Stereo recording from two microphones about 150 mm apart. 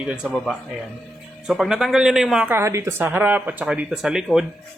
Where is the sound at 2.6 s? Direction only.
20° right (ahead or behind).